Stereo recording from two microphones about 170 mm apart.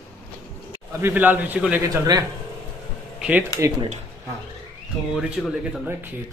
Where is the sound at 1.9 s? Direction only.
20° right (ahead or behind).